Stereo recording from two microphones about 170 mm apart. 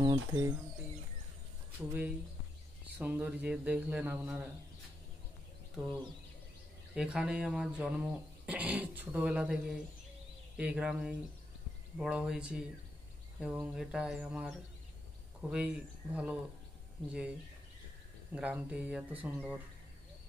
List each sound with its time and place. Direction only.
0.0 s speech: 25° right (ahead or behind)
1.8 s speech: 10° right (ahead or behind)
7.0 s speech: 5° right (ahead or behind)
15.5 s speech: 10° right (ahead or behind)
18.3 s speech: 5° right (ahead or behind)